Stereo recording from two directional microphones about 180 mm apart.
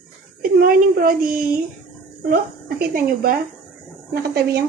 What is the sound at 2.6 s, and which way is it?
Speech, 55° right (ahead or behind).